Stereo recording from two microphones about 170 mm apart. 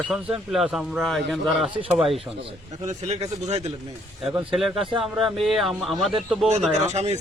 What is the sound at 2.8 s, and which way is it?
Speech, 40° right (ahead or behind).